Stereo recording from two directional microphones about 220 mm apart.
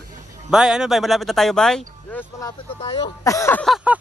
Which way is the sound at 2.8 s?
25° left (ahead or behind).